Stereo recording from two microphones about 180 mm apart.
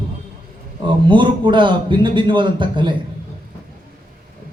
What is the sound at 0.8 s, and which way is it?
A man's voice, 25° right (ahead or behind).